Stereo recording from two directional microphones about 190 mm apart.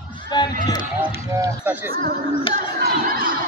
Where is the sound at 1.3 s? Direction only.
15° right (ahead or behind).